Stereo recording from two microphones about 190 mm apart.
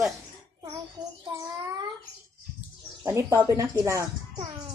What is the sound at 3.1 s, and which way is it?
Speech, 15° right (ahead or behind).